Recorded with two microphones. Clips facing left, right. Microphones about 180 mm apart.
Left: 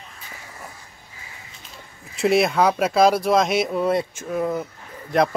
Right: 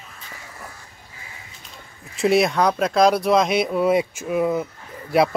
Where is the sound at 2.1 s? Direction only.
Centre (ahead or behind).